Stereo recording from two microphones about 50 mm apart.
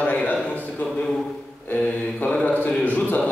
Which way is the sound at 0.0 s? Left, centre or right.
Left.